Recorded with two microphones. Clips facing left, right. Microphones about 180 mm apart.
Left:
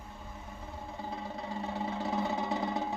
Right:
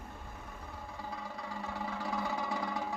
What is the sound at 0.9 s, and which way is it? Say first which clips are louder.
Music: left 4 dB; 25° left (ahead or behind).